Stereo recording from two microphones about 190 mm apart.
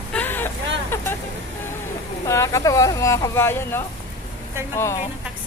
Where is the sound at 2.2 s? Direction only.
15° left (ahead or behind).